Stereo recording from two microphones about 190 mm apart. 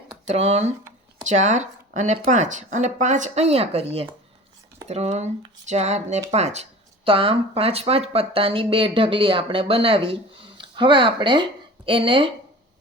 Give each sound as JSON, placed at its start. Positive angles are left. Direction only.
{"t": 0.3, "sound": "speech", "side_deg": -35}